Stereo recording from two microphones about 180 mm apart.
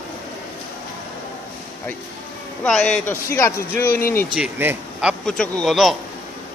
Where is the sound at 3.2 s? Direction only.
15° left (ahead or behind).